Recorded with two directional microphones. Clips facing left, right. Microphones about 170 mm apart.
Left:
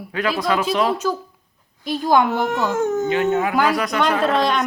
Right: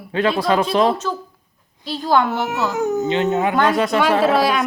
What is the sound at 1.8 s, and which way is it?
Speech, 15° left (ahead or behind).